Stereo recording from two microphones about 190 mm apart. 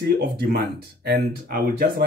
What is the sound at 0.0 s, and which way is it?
Speech, 55° right (ahead or behind).